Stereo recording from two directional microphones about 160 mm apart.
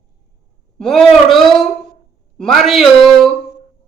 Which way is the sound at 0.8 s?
Centre (ahead or behind).